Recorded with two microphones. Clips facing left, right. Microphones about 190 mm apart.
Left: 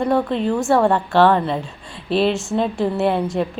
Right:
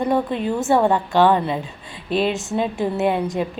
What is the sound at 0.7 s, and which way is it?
A woman's voice, 20° right (ahead or behind).